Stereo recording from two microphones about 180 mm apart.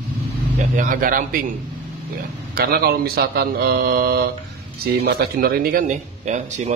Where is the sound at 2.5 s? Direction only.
60° right (ahead or behind).